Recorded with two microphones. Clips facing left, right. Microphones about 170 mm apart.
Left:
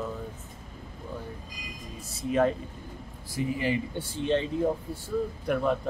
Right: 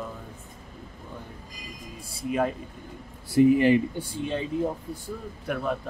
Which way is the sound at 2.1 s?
10° right (ahead or behind).